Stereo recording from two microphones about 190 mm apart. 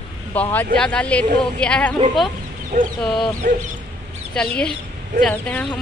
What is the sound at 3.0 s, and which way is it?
Speech, 5° left (ahead or behind).